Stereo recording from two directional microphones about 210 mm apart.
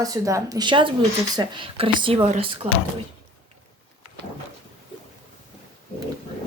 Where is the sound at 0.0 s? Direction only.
15° right (ahead or behind).